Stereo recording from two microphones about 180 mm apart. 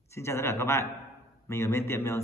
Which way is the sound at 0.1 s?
15° left (ahead or behind).